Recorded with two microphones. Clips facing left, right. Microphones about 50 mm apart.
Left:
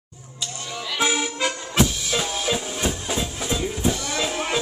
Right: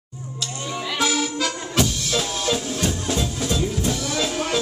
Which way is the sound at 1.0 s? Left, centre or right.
Centre.